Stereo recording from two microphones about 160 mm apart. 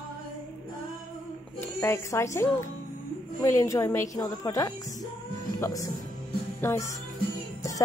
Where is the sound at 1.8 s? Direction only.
15° left (ahead or behind).